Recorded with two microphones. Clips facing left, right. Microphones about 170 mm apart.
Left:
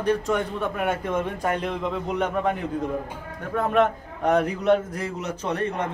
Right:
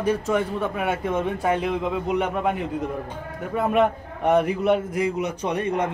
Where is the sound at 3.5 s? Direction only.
10° right (ahead or behind).